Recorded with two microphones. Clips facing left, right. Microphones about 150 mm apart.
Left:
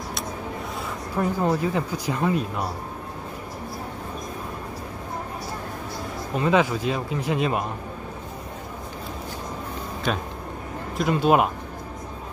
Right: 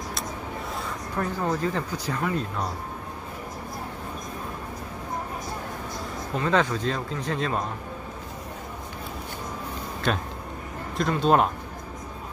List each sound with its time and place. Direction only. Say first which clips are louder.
1.1 s speech: left 4 dB; 10° left (ahead or behind)
6.3 s speech: left 3 dB; 15° left (ahead or behind)
10.1 s speech: even; centre (ahead or behind)